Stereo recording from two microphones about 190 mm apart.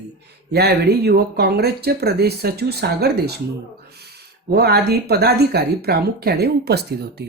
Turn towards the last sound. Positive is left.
turn(degrees=-55)  # may be behind; listen again after turning